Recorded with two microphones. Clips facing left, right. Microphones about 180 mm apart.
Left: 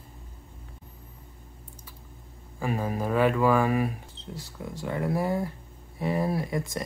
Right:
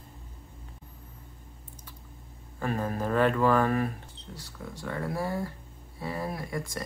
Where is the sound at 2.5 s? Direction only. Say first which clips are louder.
Left 1 dB; 10° left (ahead or behind).